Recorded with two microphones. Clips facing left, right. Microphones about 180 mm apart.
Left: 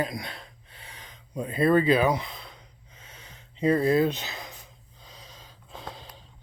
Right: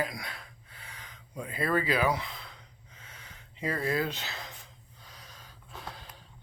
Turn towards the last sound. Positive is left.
turn(degrees=20)  # may be behind; listen again after turning